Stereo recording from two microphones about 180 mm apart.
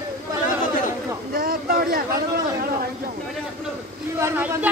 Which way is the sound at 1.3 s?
55° right (ahead or behind).